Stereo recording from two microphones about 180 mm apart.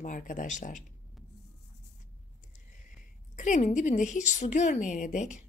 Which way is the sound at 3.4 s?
45° left (ahead or behind).